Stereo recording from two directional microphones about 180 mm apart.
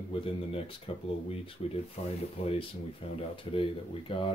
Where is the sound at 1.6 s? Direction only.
35° left (ahead or behind).